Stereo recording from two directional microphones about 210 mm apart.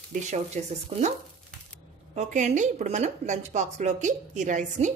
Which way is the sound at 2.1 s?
35° right (ahead or behind).